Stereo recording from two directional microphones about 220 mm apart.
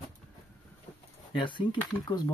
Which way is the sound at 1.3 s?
20° left (ahead or behind).